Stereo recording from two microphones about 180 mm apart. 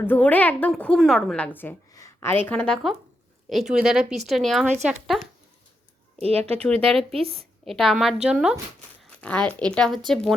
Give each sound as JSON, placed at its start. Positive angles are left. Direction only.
{"t": 0.0, "sound": "a woman's voice", "side_deg": 10}
{"t": 6.1, "sound": "speech", "side_deg": -35}
{"t": 6.6, "sound": "a woman's voice", "side_deg": 5}
{"t": 7.1, "sound": "a woman's voice", "side_deg": -30}
{"t": 7.6, "sound": "a woman's voice", "side_deg": 0}
{"t": 9.0, "sound": "a sound", "side_deg": 5}
{"t": 9.5, "sound": "a woman's voice", "side_deg": 5}